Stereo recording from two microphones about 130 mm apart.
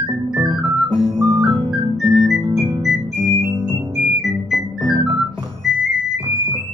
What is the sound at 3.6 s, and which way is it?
Music, 5° right (ahead or behind).